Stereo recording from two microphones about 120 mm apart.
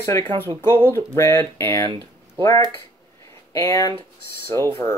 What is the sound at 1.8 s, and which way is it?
Speech, 45° right (ahead or behind).